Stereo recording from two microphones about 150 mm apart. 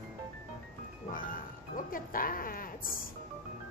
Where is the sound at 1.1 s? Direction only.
65° left (ahead or behind).